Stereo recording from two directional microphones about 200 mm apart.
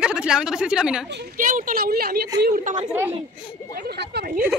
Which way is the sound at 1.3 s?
40° right (ahead or behind).